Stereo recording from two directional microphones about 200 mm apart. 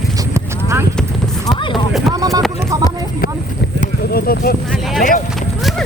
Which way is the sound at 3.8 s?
50° left (ahead or behind).